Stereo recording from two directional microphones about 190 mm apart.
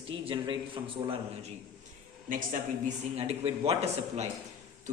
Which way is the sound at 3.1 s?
35° right (ahead or behind).